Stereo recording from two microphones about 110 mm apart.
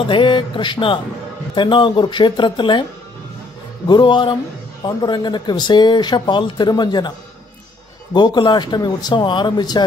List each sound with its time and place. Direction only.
0.0 s speech: 50° left (ahead or behind)
3.8 s speech: 45° left (ahead or behind)
8.1 s speech: 40° left (ahead or behind)